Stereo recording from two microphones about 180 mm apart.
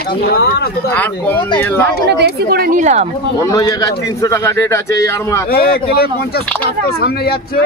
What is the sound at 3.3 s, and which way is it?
Speech, 15° left (ahead or behind).